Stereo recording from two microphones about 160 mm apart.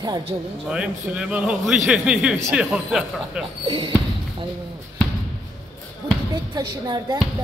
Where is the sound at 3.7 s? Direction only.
30° right (ahead or behind).